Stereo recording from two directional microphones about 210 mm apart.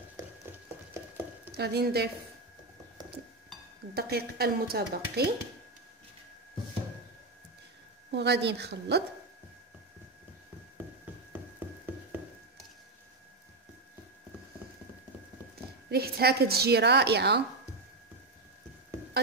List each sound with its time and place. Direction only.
1.5 s a woman's voice: 50° right (ahead or behind)
3.9 s a woman's voice: 50° right (ahead or behind)
8.1 s a woman's voice: 55° right (ahead or behind)
11.3 s a sound: 10° right (ahead or behind)
15.9 s a woman's voice: 50° right (ahead or behind)